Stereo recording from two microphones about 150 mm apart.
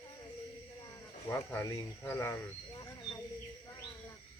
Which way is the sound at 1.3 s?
15° left (ahead or behind).